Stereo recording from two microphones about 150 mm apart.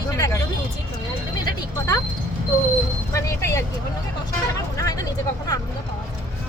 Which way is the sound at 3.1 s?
20° left (ahead or behind).